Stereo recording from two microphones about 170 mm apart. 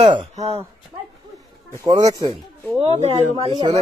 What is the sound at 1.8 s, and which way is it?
Speech, 20° right (ahead or behind).